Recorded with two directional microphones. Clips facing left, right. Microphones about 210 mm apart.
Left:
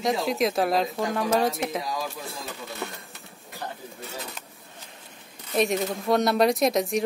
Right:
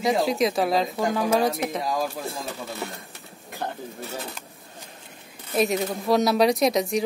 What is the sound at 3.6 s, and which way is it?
Stir, 55° right (ahead or behind).